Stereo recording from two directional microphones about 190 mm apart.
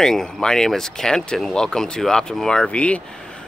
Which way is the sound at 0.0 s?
Centre (ahead or behind).